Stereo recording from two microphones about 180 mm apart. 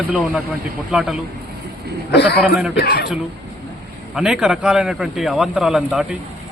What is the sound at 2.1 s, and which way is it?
Speech, 65° left (ahead or behind).